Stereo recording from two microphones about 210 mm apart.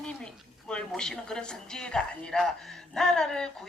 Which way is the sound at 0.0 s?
5° left (ahead or behind).